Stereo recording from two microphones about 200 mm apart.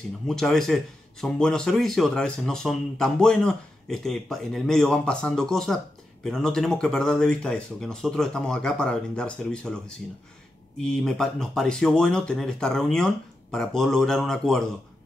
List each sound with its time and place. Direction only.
0.3 s speech: centre (ahead or behind)